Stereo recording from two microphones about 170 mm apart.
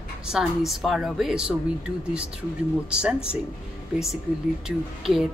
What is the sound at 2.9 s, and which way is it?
Speech, 5° right (ahead or behind).